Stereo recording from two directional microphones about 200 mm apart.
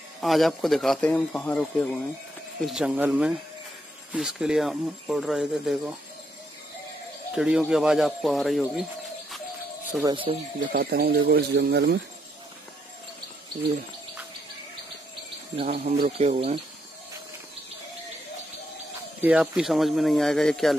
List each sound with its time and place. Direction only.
0.2 s speech: centre (ahead or behind)
7.3 s speech: 5° right (ahead or behind)
10.0 s speech: 25° right (ahead or behind)
10.7 s speech: 50° right (ahead or behind)
15.6 s speech: 45° right (ahead or behind)
16.1 s speech: 30° right (ahead or behind)
19.2 s speech: 5° right (ahead or behind)